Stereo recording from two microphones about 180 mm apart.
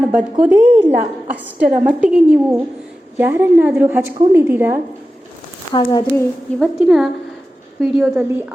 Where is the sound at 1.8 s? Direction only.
5° right (ahead or behind).